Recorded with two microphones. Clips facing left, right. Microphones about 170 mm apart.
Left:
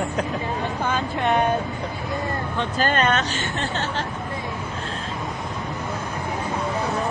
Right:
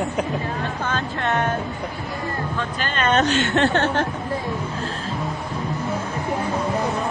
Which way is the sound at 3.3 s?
65° right (ahead or behind).